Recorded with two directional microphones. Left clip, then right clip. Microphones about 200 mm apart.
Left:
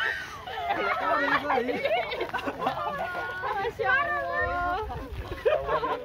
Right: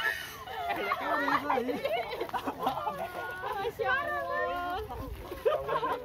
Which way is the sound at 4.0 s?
25° right (ahead or behind).